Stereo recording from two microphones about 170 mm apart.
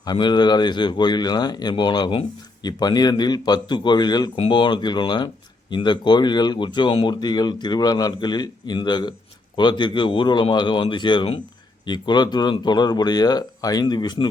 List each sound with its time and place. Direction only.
0.0 s speech: 25° left (ahead or behind)